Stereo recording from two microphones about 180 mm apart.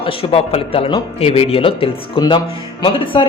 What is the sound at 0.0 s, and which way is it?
Speech, 30° left (ahead or behind).